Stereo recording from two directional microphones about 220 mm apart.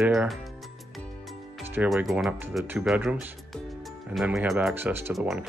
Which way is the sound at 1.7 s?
5° right (ahead or behind).